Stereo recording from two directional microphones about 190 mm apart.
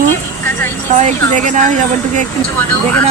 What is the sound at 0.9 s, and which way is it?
Speech, 40° right (ahead or behind).